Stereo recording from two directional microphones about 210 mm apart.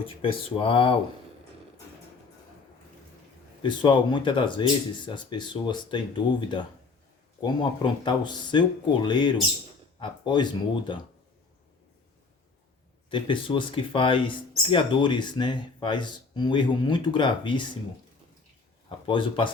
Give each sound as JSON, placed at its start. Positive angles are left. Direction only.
{"t": 0.2, "sound": "speech", "side_deg": 25}
{"t": 3.6, "sound": "speech", "side_deg": 20}
{"t": 13.1, "sound": "speech", "side_deg": 25}
{"t": 19.0, "sound": "speech", "side_deg": 25}